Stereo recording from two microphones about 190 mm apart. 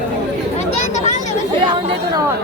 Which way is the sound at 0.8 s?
35° left (ahead or behind).